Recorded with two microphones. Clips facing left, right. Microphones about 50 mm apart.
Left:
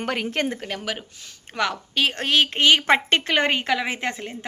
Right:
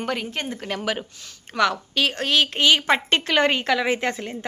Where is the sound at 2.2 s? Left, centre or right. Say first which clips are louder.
Left 1 dB; left.